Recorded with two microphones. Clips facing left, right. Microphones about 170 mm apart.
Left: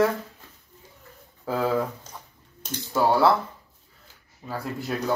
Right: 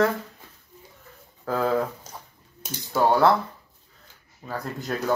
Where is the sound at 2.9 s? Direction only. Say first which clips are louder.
Right 1 dB; 5° left (ahead or behind).